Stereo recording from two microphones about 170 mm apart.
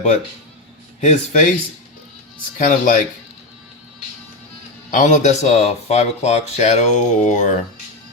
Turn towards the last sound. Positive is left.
turn(degrees=45)  # may be behind; listen again after turning